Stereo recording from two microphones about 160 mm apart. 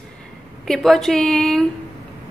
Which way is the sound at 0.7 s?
Centre (ahead or behind).